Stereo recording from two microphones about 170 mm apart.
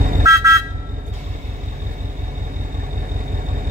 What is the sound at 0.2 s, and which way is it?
Vehicle, 20° right (ahead or behind).